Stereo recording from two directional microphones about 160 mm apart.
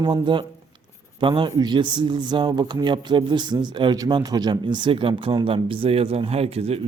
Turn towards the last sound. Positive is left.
turn(degrees=-40)  # may be behind; listen again after turning